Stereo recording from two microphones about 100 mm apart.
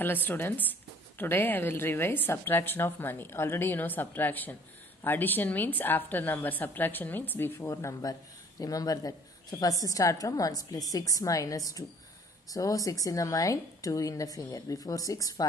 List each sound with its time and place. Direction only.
0.0 s a woman's voice: 20° left (ahead or behind)
7.6 s speech: 35° left (ahead or behind)